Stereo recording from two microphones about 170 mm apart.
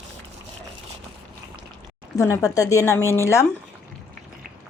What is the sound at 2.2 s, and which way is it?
A woman's voice, 20° left (ahead or behind).